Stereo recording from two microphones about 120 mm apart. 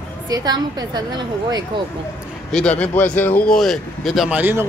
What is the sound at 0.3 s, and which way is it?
A woman's voice, 35° right (ahead or behind).